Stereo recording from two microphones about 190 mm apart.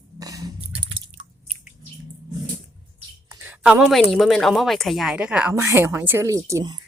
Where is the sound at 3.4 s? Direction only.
10° right (ahead or behind).